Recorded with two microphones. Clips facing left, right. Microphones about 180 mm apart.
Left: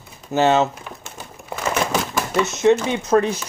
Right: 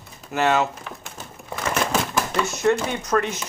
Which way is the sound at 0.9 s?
Centre (ahead or behind).